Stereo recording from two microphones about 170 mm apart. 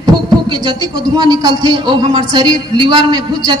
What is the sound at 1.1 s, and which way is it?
A man's voice, 20° right (ahead or behind).